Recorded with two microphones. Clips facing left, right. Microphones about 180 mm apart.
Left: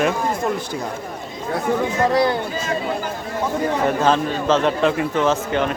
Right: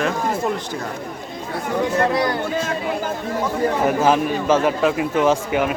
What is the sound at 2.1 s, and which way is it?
Speech, 30° left (ahead or behind).